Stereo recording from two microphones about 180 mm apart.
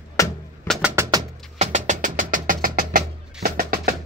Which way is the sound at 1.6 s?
45° right (ahead or behind).